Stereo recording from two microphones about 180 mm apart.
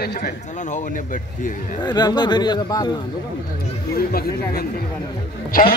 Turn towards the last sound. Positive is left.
turn(degrees=50)  # may be behind; listen again after turning